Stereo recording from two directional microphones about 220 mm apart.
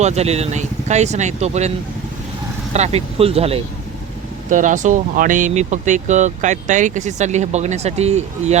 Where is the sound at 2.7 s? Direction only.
30° right (ahead or behind).